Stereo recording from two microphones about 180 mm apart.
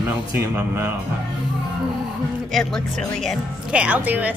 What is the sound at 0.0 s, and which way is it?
Speech, 10° right (ahead or behind).